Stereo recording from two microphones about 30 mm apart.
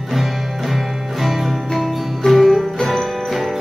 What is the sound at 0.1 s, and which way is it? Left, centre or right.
Music, centre.